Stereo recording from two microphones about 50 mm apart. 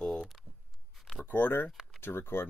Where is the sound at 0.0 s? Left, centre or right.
Centre.